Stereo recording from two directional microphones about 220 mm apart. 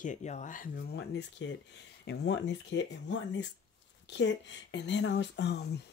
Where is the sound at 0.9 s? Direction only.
50° left (ahead or behind).